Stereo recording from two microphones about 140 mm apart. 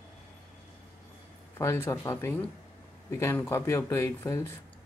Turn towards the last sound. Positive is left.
turn(degrees=20)  # may be behind; listen again after turning